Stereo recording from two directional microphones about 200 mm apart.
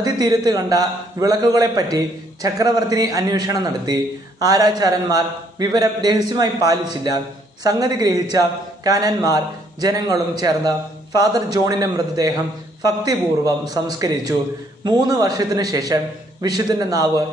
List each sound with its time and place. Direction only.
0.0 s a man's voice: 20° right (ahead or behind)